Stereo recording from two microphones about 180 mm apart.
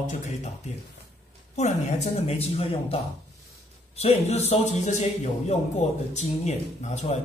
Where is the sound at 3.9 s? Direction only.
35° left (ahead or behind).